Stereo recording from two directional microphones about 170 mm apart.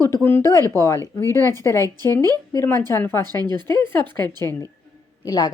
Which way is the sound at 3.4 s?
25° right (ahead or behind).